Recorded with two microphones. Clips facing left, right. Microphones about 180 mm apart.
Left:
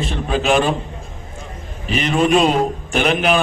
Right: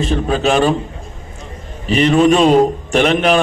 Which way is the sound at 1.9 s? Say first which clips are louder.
Right 5 dB; 35° right (ahead or behind).